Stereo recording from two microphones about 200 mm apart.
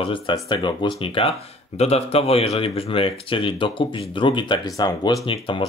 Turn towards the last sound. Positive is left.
turn(degrees=25)  # may be behind; listen again after turning